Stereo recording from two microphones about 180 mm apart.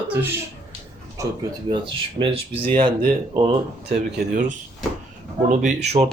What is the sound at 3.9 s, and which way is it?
Speech, 60° right (ahead or behind).